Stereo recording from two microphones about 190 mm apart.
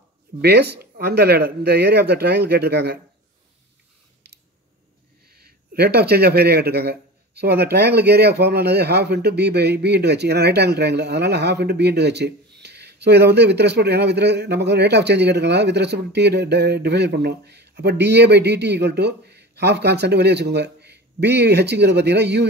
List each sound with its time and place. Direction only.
0.4 s speech: 60° right (ahead or behind)
5.3 s speech: 55° right (ahead or behind)